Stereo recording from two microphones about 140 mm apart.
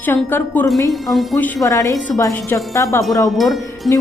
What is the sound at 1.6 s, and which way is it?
A woman's voice, 20° left (ahead or behind).